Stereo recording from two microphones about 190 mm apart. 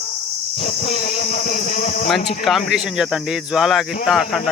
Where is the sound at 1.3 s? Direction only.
45° left (ahead or behind).